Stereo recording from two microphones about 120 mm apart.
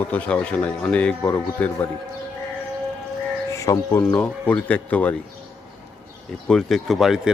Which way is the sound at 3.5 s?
25° left (ahead or behind).